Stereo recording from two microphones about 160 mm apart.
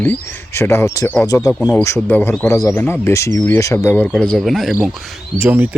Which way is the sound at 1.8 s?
15° left (ahead or behind).